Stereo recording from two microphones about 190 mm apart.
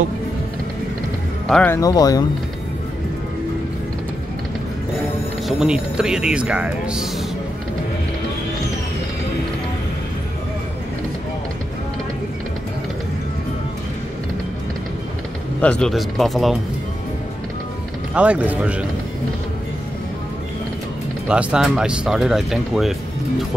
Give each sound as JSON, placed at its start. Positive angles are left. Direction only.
{"t": 1.5, "sound": "speech", "side_deg": 10}
{"t": 1.8, "sound": "speech", "side_deg": 20}
{"t": 5.5, "sound": "speech", "side_deg": -5}
{"t": 15.6, "sound": "speech", "side_deg": 5}
{"t": 18.1, "sound": "speech", "side_deg": -5}
{"t": 21.3, "sound": "speech", "side_deg": -5}